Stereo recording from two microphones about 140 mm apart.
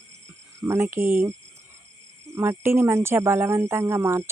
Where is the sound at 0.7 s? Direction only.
20° right (ahead or behind).